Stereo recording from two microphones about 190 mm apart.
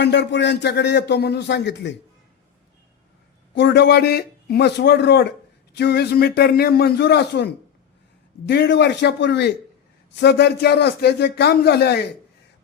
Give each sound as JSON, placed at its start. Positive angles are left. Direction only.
{"t": 0.0, "sound": "a man's voice", "side_deg": 65}
{"t": 3.5, "sound": "a man's voice", "side_deg": 65}